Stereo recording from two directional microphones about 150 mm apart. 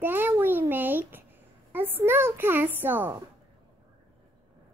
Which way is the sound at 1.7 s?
15° right (ahead or behind).